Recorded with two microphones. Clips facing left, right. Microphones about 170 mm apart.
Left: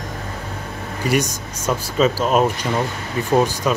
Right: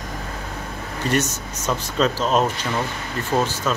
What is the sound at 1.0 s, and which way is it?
Speech, 10° left (ahead or behind).